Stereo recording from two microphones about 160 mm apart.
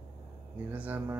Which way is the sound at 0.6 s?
10° right (ahead or behind).